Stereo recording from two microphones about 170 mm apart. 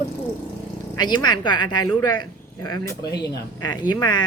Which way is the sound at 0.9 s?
25° left (ahead or behind).